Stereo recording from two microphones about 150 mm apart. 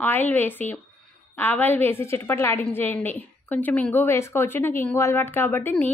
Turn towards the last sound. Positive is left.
turn(degrees=10)  # may be behind; listen again after turning